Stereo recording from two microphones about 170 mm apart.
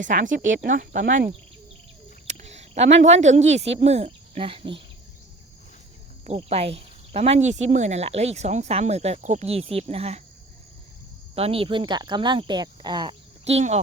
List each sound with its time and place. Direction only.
0.0 s speech: 50° right (ahead or behind)
2.2 s a sound: 45° right (ahead or behind)
3.4 s speech: 90° right
3.8 s speech: 40° right (ahead or behind)
6.2 s speech: 35° right (ahead or behind)
11.3 s speech: 35° right (ahead or behind)